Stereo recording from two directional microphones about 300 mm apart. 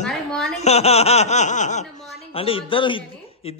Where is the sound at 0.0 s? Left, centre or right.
Centre.